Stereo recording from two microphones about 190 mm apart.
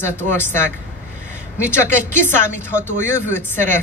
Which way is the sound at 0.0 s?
10° left (ahead or behind).